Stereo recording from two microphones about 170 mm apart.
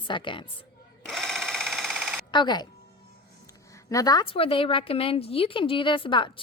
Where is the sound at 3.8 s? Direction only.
20° left (ahead or behind).